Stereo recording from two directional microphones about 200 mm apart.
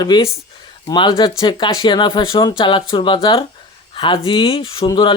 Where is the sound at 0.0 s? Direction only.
20° left (ahead or behind).